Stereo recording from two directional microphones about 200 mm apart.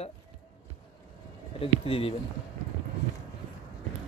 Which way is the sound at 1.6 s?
30° left (ahead or behind).